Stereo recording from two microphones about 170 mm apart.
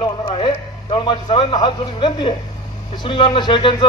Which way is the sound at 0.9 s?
30° left (ahead or behind).